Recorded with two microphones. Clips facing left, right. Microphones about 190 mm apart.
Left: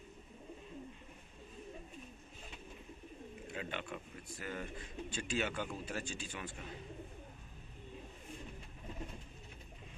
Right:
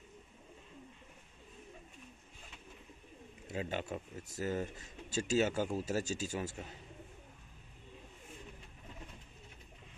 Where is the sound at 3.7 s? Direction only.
40° right (ahead or behind).